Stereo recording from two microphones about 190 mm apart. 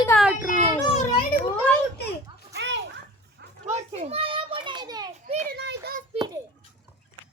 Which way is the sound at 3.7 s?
35° right (ahead or behind).